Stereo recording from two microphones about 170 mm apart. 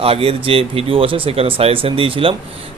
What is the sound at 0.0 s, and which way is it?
Speech, 35° right (ahead or behind).